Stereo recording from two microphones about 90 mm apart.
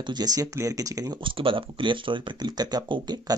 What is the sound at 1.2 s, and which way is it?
Speech, 70° right (ahead or behind).